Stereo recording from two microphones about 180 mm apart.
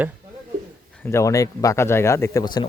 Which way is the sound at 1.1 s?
15° left (ahead or behind).